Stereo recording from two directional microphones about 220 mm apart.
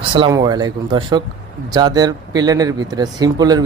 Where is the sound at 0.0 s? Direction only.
25° right (ahead or behind).